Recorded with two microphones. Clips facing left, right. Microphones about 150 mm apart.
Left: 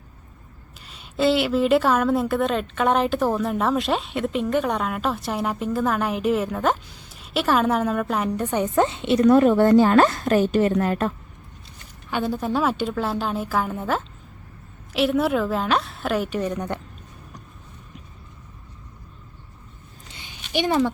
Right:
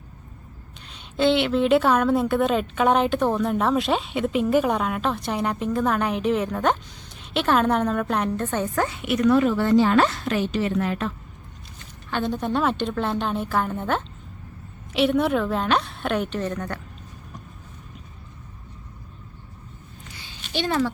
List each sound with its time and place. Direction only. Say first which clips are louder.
0.9 s a woman's voice: even; 5° left (ahead or behind)
8.3 s a woman's voice: left 2 dB; 15° left (ahead or behind)
9.2 s a woman's voice: left 4 dB; 45° left (ahead or behind)
12.1 s a woman's voice: left 1 dB; 5° left (ahead or behind)
20.1 s a sound: even; 20° left (ahead or behind)